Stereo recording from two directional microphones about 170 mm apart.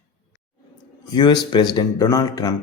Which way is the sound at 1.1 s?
25° left (ahead or behind).